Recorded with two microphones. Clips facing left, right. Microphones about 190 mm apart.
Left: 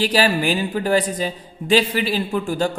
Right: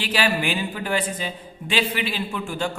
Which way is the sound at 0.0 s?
40° left (ahead or behind).